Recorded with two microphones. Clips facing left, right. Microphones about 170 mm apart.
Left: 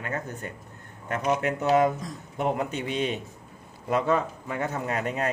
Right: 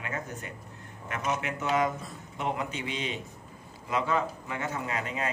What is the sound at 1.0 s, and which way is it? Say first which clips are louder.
Speech: left 6 dB; 50° left (ahead or behind).